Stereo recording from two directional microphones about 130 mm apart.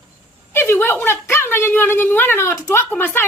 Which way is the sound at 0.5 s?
20° left (ahead or behind).